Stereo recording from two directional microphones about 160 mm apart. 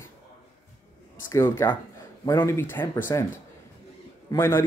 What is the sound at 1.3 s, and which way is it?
Speech, 15° left (ahead or behind).